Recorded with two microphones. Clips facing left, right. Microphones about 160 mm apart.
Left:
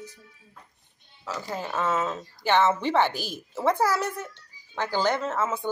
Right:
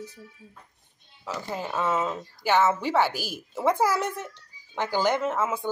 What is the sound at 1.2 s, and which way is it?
Speech, 15° right (ahead or behind).